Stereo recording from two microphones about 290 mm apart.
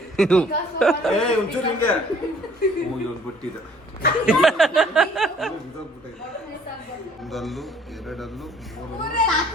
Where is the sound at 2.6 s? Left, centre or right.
Left.